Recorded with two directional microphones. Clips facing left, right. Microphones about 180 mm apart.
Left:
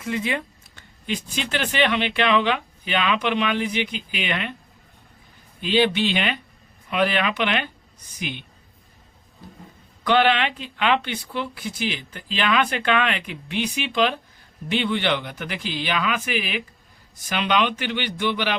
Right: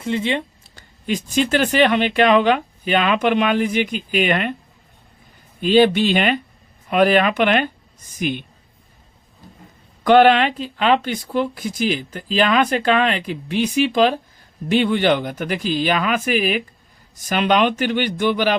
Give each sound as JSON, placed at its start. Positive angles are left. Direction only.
{"t": 0.0, "sound": "a sound", "side_deg": -30}
{"t": 1.0, "sound": "speech", "side_deg": -45}
{"t": 5.5, "sound": "speech", "side_deg": -45}
{"t": 10.0, "sound": "speech", "side_deg": -45}